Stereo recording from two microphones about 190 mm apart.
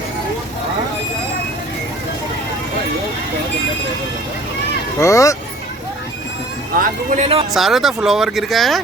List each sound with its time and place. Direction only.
4.9 s speech: 15° left (ahead or behind)
6.7 s speech: 35° right (ahead or behind)
7.5 s speech: centre (ahead or behind)